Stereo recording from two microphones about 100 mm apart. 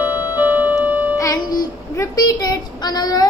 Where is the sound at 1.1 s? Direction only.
35° left (ahead or behind).